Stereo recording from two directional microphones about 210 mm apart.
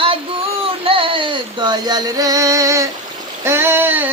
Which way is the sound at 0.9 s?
25° right (ahead or behind).